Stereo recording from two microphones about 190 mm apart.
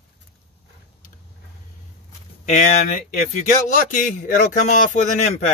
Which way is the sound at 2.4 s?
40° left (ahead or behind).